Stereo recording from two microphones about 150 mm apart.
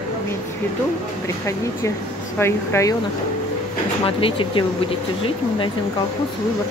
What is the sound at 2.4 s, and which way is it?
Speech, 15° left (ahead or behind).